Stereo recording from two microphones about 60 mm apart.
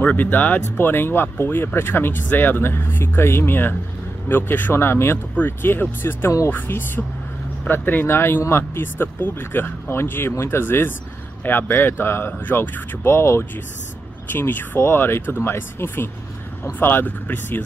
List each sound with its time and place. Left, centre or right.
0.0 s speech: left
7.6 s speech: left
13.0 s speech: left
14.8 s speech: left